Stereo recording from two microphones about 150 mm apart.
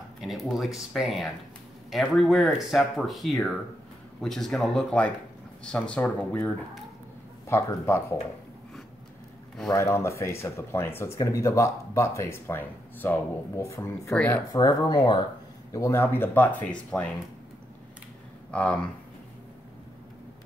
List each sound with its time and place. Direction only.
0.2 s speech: centre (ahead or behind); by 8.0 s 15° left (ahead or behind)
9.7 s speech: 20° left (ahead or behind)
14.5 s speech: 25° left (ahead or behind); by 17.1 s 10° left (ahead or behind)
18.5 s speech: 10° left (ahead or behind)